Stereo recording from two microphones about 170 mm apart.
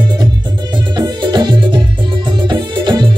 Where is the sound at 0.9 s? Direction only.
25° right (ahead or behind).